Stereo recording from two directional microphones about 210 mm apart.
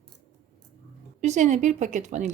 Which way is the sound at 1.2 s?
35° right (ahead or behind).